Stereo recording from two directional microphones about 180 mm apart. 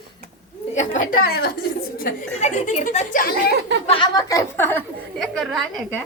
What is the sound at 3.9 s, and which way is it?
Speech, 25° left (ahead or behind).